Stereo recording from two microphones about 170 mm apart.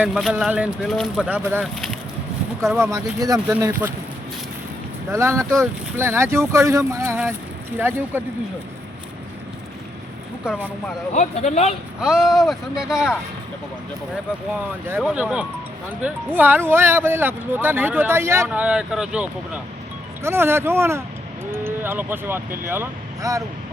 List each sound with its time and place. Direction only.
0.0 s speech: centre (ahead or behind)
1.6 s speech: centre (ahead or behind)
2.7 s speech: 15° right (ahead or behind)
5.1 s speech: 15° right (ahead or behind)
11.1 s speech: 40° left (ahead or behind)
11.9 s speech: 5° right (ahead or behind)
15.0 s speech: 5° right (ahead or behind)